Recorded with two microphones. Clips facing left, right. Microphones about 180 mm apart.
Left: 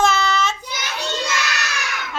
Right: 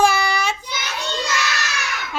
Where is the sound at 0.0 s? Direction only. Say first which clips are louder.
Right 1 dB; 10° right (ahead or behind).